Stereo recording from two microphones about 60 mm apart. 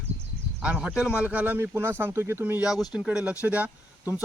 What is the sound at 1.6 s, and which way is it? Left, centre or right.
Speech, right.